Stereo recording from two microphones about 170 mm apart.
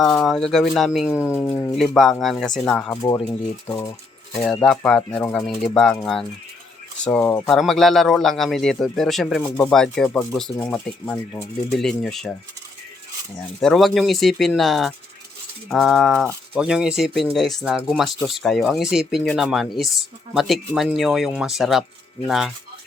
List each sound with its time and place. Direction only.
0.0 s speech: centre (ahead or behind)
1.3 s speech: 10° left (ahead or behind)
4.6 s speech: 5° left (ahead or behind)
7.4 s speech: centre (ahead or behind)
13.6 s speech: centre (ahead or behind)